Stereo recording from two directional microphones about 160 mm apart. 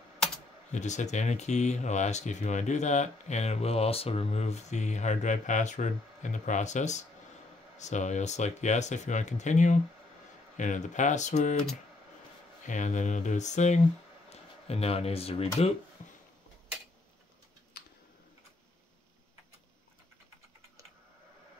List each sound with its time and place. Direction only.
0.7 s speech: 50° left (ahead or behind)
12.6 s speech: 50° left (ahead or behind)